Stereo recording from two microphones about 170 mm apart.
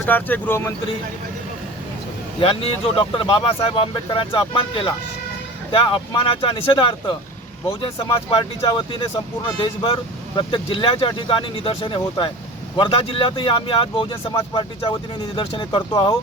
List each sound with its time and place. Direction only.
0.0 s speech: 10° left (ahead or behind)
2.4 s speech: 30° left (ahead or behind)